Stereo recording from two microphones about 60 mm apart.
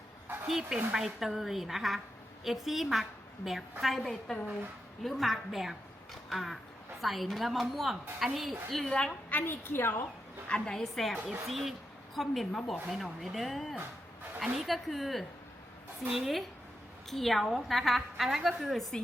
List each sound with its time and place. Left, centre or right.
0.4 s a woman's voice: centre
6.2 s a sound: centre
7.0 s a woman's voice: centre
9.3 s a woman's voice: left
10.5 s a woman's voice: centre